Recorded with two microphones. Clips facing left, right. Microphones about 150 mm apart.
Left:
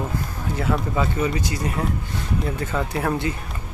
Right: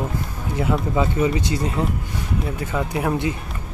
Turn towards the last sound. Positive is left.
turn(degrees=-20)  # may be behind; listen again after turning